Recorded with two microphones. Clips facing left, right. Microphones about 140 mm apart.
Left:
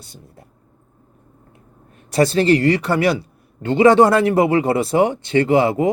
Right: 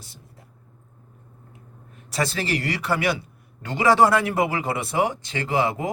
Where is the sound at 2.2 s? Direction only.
30° left (ahead or behind).